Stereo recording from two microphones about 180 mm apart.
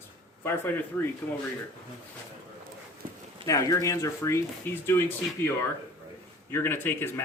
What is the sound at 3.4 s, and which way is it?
Speech, 15° left (ahead or behind).